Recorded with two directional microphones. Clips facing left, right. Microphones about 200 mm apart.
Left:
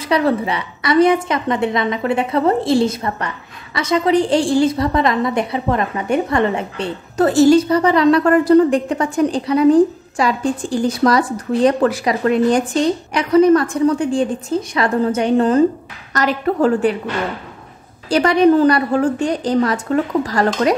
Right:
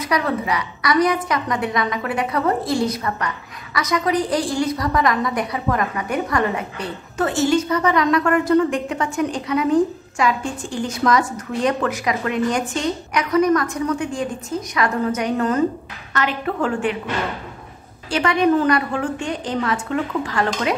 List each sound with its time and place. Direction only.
0.0 s a woman's voice: 30° left (ahead or behind)
18.1 s a woman's voice: 35° left (ahead or behind)